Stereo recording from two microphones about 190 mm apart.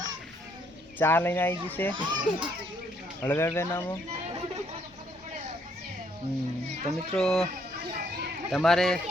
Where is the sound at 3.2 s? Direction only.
15° left (ahead or behind).